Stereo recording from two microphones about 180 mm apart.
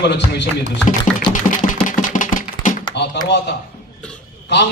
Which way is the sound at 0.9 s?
45° left (ahead or behind).